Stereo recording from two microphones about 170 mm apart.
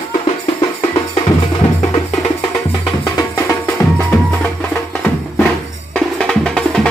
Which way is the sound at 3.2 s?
15° left (ahead or behind).